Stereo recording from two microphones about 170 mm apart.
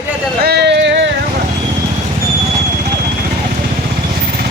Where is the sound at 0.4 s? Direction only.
80° right.